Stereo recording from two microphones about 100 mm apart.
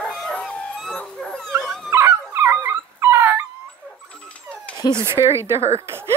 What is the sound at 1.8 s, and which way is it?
Dog, 25° right (ahead or behind).